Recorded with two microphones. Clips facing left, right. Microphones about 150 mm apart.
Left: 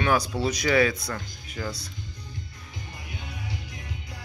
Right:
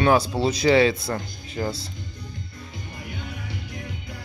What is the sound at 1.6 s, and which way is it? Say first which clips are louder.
Speech: right 6 dB; 40° right (ahead or behind).